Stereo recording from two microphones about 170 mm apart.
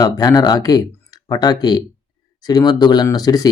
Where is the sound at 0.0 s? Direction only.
20° left (ahead or behind).